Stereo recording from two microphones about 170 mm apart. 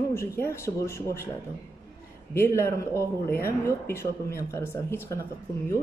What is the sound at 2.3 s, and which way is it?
Speech, 15° left (ahead or behind).